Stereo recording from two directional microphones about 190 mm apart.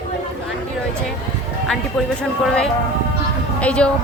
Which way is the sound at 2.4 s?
5° left (ahead or behind).